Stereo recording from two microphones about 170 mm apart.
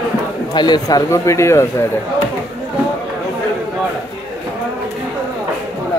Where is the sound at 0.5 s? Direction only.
25° left (ahead or behind).